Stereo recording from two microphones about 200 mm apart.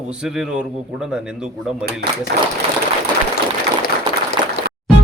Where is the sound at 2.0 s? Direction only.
55° right (ahead or behind).